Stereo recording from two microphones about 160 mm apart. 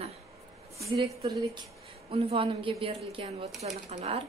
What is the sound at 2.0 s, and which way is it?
A woman's voice, 40° right (ahead or behind).